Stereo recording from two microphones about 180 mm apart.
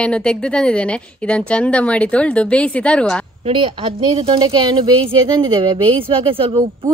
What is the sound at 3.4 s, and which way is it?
Speech, 30° right (ahead or behind).